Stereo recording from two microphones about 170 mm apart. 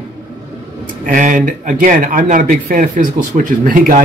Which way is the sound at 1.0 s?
50° right (ahead or behind).